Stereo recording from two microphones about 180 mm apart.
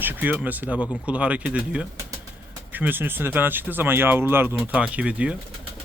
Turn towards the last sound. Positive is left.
turn(degrees=-5)  # may be behind; listen again after turning